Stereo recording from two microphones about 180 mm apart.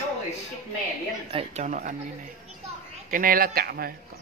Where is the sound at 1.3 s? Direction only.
35° right (ahead or behind).